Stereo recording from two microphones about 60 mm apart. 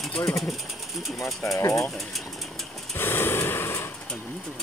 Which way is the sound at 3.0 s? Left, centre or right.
Left.